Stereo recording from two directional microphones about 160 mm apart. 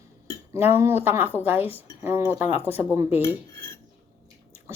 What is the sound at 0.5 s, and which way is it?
Speech, 15° right (ahead or behind).